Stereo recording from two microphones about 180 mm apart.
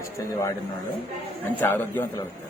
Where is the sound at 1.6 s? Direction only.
10° left (ahead or behind).